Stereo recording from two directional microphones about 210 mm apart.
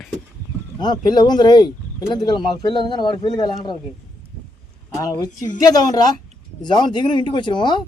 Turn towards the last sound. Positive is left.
turn(degrees=20)  # may be behind; listen again after turning